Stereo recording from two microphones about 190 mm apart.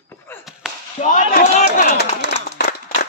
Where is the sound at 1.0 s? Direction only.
40° left (ahead or behind).